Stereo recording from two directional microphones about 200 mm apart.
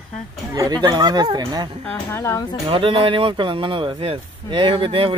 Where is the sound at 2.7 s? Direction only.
25° right (ahead or behind).